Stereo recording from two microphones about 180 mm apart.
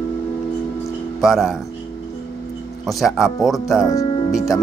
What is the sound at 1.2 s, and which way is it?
Speech, centre (ahead or behind).